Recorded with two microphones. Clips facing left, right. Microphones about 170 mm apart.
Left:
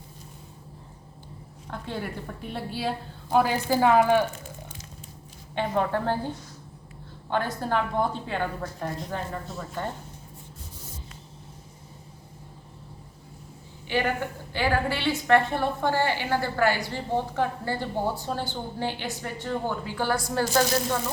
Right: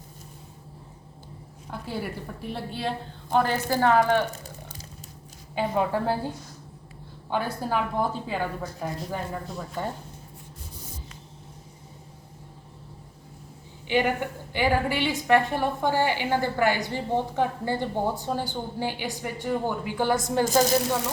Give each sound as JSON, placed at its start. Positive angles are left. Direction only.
{"t": 1.7, "sound": "a woman's voice", "side_deg": -5}
{"t": 4.3, "sound": "a sound", "side_deg": -35}
{"t": 5.5, "sound": "a woman's voice", "side_deg": -5}
{"t": 13.8, "sound": "a woman's voice", "side_deg": -15}